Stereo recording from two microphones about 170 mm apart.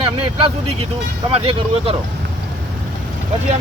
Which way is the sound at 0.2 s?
30° right (ahead or behind).